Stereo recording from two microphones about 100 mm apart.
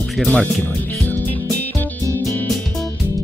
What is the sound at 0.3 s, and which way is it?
Speech, 10° left (ahead or behind).